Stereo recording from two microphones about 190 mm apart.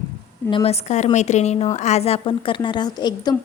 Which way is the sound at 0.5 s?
30° left (ahead or behind).